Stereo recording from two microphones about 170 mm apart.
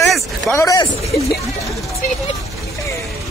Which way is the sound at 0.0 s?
Centre (ahead or behind).